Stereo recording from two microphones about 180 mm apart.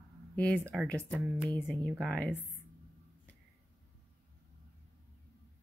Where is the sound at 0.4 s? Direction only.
5° left (ahead or behind).